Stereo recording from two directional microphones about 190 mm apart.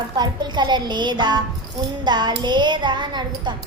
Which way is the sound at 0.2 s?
25° right (ahead or behind).